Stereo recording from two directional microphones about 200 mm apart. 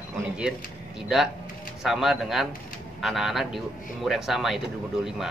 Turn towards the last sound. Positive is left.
turn(degrees=0)  # may be behind; listen again after turning